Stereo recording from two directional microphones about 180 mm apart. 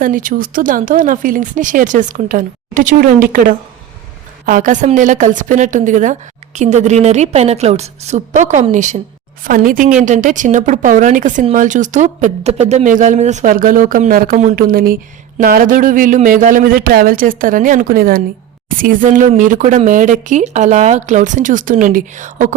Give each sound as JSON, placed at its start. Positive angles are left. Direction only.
{"t": 0.0, "sound": "a woman's voice", "side_deg": -50}